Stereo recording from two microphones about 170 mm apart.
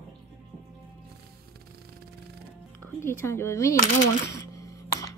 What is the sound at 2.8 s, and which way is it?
Speech, 15° left (ahead or behind).